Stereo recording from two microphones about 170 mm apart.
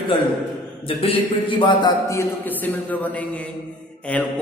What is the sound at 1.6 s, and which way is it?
A man's voice, 25° left (ahead or behind).